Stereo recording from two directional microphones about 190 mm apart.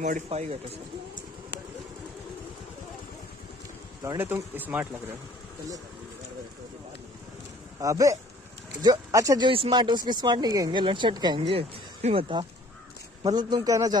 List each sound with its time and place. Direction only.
0.0 s speech: 35° right (ahead or behind)
4.0 s speech: 15° right (ahead or behind)
7.8 s speech: 15° right (ahead or behind)